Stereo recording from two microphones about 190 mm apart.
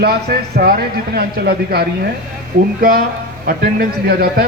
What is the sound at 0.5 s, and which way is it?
Speech, 50° right (ahead or behind).